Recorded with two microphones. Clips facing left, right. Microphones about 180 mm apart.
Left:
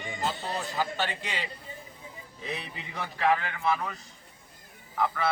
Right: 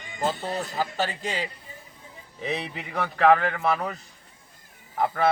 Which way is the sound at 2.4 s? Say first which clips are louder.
Right 7 dB; 70° right (ahead or behind).